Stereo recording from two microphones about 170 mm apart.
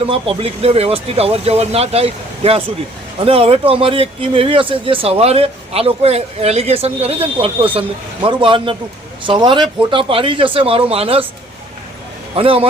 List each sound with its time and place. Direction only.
0.1 s speech: 35° right (ahead or behind)
12.4 s speech: 35° right (ahead or behind)